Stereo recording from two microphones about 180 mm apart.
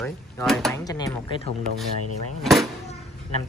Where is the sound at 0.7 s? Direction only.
20° left (ahead or behind).